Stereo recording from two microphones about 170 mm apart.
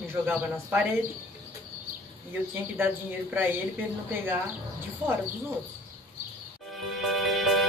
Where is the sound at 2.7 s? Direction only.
15° right (ahead or behind).